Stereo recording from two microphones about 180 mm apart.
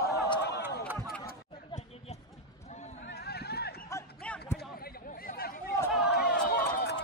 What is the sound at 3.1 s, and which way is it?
Run, 65° left (ahead or behind).